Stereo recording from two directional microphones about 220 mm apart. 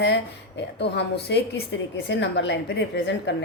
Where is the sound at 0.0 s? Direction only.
50° left (ahead or behind).